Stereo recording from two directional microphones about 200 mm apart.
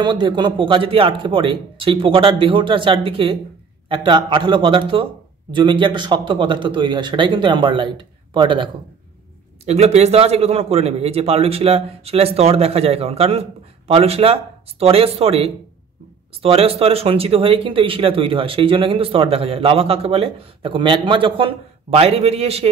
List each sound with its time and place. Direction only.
0.0 s speech: 25° right (ahead or behind)
9.7 s speech: 35° right (ahead or behind)